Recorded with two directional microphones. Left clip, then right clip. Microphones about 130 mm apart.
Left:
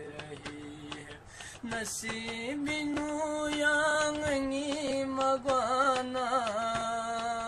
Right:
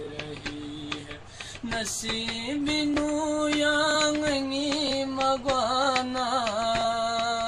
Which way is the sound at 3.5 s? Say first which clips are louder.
Right 2 dB; 35° left (ahead or behind).